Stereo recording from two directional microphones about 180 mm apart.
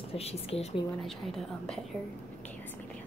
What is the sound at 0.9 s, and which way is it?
A woman's voice, centre (ahead or behind).